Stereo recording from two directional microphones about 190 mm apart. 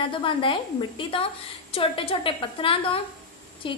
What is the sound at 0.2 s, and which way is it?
A woman's voice, 25° left (ahead or behind).